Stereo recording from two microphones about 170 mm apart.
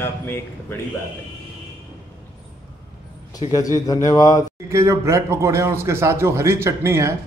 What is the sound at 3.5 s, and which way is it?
Speech, 20° left (ahead or behind).